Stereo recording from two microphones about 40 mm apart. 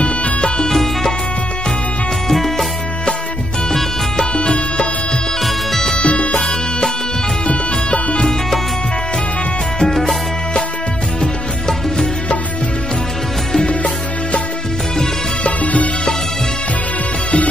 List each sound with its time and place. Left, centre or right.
0.0 s music: left
0.7 s music: centre
2.2 s music: centre
4.4 s music: left
5.9 s music: left
7.4 s bagpipes: left
9.8 s music: centre
13.7 s music: left
15.4 s music: left